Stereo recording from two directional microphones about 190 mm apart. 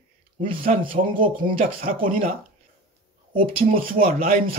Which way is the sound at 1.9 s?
45° right (ahead or behind).